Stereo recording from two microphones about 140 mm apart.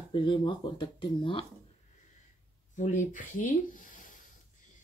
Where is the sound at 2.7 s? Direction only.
60° left (ahead or behind).